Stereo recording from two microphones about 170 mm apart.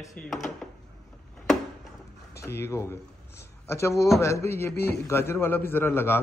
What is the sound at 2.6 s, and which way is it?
A man's voice, 15° left (ahead or behind).